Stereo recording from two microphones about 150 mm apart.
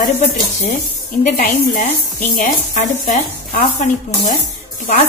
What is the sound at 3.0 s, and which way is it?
Speech, 70° left (ahead or behind).